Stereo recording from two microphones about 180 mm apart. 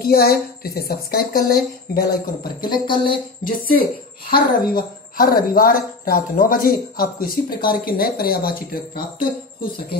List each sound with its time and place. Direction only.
0.0 s a woman's voice: 60° left (ahead or behind)
2.4 s speech: 25° left (ahead or behind)
3.4 s speech: 55° left (ahead or behind)